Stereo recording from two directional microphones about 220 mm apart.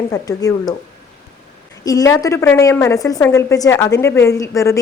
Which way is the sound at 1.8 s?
15° left (ahead or behind).